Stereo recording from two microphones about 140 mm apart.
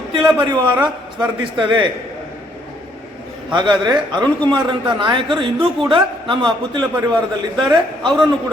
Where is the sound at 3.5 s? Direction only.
30° right (ahead or behind).